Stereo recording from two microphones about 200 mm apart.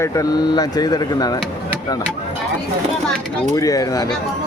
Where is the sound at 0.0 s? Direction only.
15° left (ahead or behind).